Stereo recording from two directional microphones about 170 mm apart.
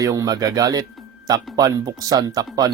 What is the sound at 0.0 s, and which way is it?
Speech, 20° right (ahead or behind).